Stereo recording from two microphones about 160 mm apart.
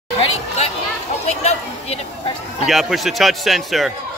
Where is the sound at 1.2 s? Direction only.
40° left (ahead or behind).